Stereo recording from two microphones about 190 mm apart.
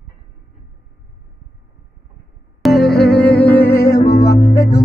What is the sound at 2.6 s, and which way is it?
Music, centre (ahead or behind).